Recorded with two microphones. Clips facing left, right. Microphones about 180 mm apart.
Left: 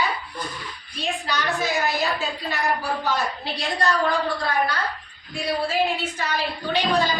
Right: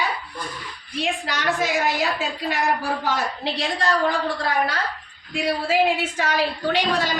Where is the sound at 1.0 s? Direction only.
90° right.